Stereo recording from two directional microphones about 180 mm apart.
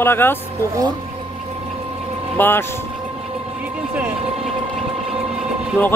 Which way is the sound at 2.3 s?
10° left (ahead or behind).